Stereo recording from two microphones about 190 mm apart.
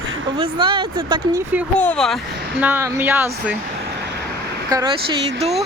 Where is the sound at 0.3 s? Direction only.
25° right (ahead or behind).